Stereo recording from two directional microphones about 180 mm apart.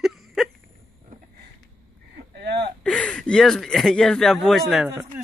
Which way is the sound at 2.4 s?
65° right (ahead or behind).